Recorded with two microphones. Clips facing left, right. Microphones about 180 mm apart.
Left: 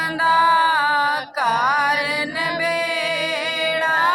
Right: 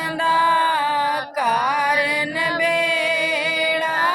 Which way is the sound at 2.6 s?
20° right (ahead or behind).